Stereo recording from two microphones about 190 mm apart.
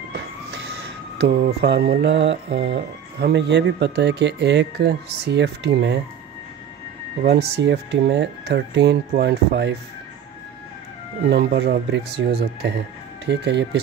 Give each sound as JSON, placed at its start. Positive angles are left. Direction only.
{"t": 1.2, "sound": "mantra", "side_deg": -60}
{"t": 7.2, "sound": "mantra", "side_deg": -65}
{"t": 11.2, "sound": "mantra", "side_deg": -65}
{"t": 13.2, "sound": "speech", "side_deg": -65}